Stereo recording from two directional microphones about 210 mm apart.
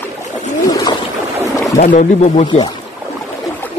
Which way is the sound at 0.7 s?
15° left (ahead or behind).